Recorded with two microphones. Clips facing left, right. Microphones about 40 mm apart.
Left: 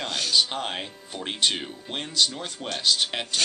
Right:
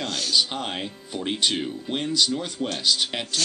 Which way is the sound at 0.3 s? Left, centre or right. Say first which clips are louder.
Even; centre.